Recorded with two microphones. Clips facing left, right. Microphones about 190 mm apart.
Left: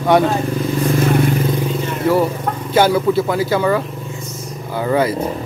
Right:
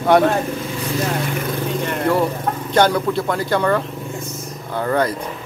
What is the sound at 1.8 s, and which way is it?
Vehicle, 65° right (ahead or behind).